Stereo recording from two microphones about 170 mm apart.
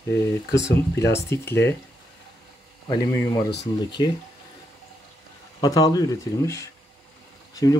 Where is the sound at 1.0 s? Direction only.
15° left (ahead or behind).